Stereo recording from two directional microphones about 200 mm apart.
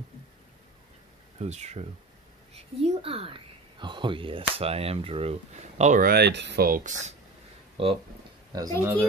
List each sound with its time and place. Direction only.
1.4 s speech: 35° right (ahead or behind)
7.7 s speech: 25° right (ahead or behind)